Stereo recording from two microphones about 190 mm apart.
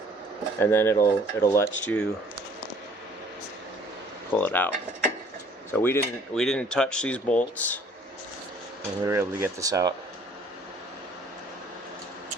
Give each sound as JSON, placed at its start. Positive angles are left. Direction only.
{"t": 0.6, "sound": "speech", "side_deg": 10}
{"t": 4.3, "sound": "speech", "side_deg": 10}
{"t": 5.7, "sound": "speech", "side_deg": 10}
{"t": 9.0, "sound": "speech", "side_deg": -15}